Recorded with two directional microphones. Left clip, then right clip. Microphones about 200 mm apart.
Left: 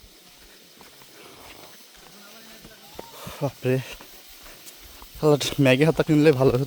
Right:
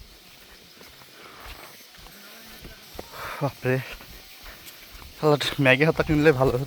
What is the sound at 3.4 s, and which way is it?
Speech, 30° left (ahead or behind).